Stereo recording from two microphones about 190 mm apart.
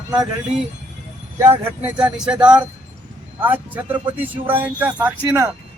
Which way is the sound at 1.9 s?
5° right (ahead or behind).